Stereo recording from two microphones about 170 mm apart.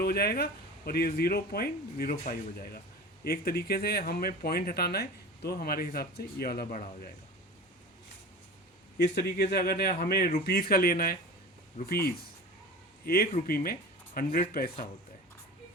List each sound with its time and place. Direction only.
0.0 s speech: 65° left (ahead or behind)
9.1 s speech: 70° left (ahead or behind)
11.8 s speech: 35° left (ahead or behind)
13.1 s speech: 60° left (ahead or behind)